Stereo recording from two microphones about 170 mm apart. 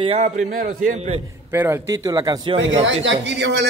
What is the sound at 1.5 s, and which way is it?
A man's voice, 15° right (ahead or behind).